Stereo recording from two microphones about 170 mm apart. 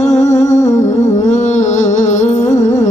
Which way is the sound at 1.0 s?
45° left (ahead or behind).